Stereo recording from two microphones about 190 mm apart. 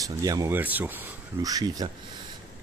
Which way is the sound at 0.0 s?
20° right (ahead or behind).